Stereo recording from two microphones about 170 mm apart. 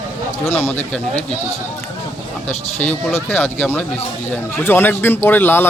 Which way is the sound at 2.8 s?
10° left (ahead or behind).